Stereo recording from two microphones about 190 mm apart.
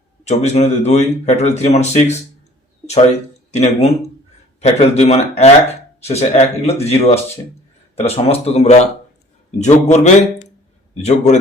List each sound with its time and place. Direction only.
0.3 s a man's voice: 35° left (ahead or behind)
3.5 s a man's voice: 35° left (ahead or behind)